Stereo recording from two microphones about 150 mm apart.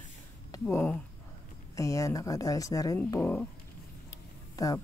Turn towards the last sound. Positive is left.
turn(degrees=25)  # may be behind; listen again after turning